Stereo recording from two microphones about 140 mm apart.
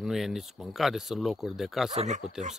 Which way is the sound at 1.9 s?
55° right (ahead or behind).